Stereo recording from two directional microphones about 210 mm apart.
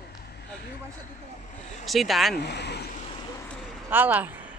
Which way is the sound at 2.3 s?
50° left (ahead or behind).